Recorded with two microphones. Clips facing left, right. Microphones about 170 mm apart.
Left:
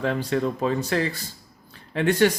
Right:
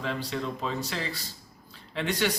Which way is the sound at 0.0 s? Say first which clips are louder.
Left 8 dB; 55° left (ahead or behind).